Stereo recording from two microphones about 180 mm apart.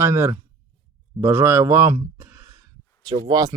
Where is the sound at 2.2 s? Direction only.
15° right (ahead or behind).